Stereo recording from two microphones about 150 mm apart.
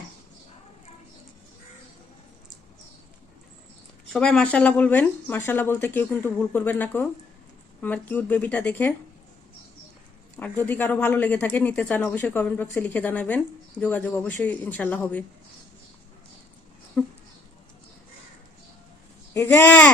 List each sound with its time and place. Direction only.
4.1 s speech: 5° left (ahead or behind)
10.3 s speech: 10° left (ahead or behind)
17.0 s speech: 15° left (ahead or behind)
19.3 s speech: 15° left (ahead or behind)